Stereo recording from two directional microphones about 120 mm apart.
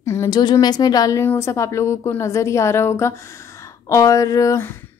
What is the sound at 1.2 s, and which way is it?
A woman's voice, 20° left (ahead or behind).